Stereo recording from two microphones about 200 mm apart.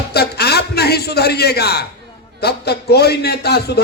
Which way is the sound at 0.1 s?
55° left (ahead or behind).